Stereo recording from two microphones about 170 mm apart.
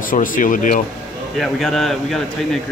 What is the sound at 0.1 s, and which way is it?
Speech, 50° left (ahead or behind).